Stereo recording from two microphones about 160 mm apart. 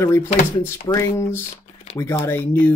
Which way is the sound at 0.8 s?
20° left (ahead or behind).